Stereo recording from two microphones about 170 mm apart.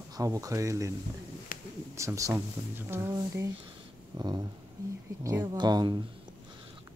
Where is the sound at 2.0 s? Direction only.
20° right (ahead or behind).